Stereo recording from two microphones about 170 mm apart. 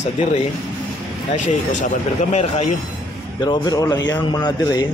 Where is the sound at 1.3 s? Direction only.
45° left (ahead or behind).